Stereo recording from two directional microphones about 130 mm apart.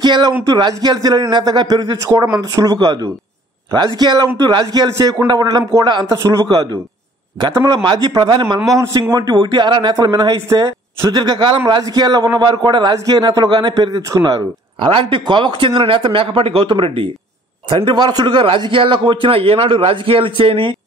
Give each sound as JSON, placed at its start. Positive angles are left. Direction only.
{"t": 0.0, "sound": "a man's voice", "side_deg": -35}
{"t": 8.7, "sound": "a man's voice", "side_deg": -25}